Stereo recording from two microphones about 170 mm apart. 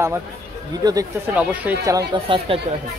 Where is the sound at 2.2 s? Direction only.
35° right (ahead or behind).